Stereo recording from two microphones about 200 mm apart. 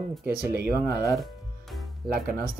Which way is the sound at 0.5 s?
50° right (ahead or behind).